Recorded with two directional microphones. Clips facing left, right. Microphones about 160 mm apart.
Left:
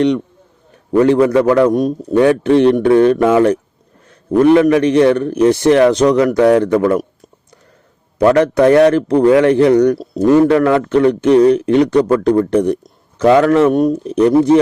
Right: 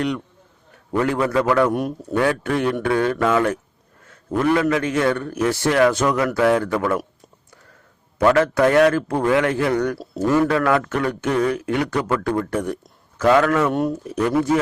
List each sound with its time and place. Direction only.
1.0 s a man's voice: 20° left (ahead or behind)
8.3 s a man's voice: 20° left (ahead or behind)